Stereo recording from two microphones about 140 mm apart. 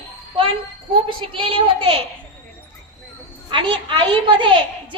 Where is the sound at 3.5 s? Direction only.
35° right (ahead or behind).